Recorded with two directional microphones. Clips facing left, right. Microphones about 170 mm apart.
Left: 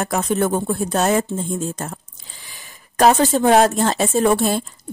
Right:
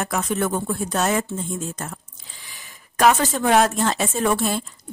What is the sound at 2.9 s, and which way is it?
Speech, 35° left (ahead or behind).